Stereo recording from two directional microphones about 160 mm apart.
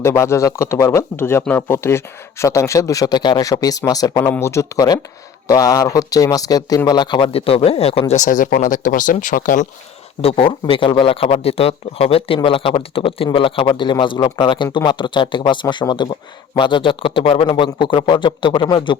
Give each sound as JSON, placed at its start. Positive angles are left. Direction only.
{"t": 0.0, "sound": "speech", "side_deg": 15}
{"t": 8.1, "sound": "speech", "side_deg": 50}
{"t": 10.2, "sound": "speech", "side_deg": 35}